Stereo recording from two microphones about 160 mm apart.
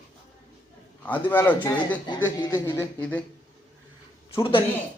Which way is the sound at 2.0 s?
25° left (ahead or behind).